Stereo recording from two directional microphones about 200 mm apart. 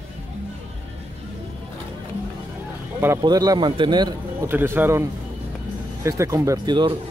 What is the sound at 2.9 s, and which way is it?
A man's voice, 10° right (ahead or behind).